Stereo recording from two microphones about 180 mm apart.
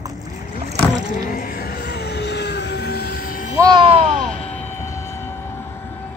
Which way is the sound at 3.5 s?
20° right (ahead or behind).